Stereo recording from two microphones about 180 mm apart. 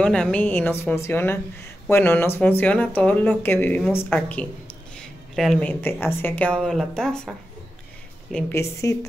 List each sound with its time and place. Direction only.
0.0 s a woman's voice: 5° left (ahead or behind)
8.5 s speech: 15° left (ahead or behind)